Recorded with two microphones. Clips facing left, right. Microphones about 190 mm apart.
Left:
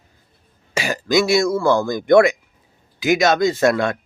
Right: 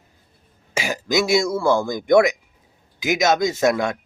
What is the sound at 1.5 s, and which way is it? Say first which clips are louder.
Speech: left 2 dB; 10° right (ahead or behind).